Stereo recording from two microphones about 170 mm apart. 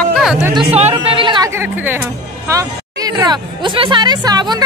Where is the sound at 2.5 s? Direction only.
20° right (ahead or behind).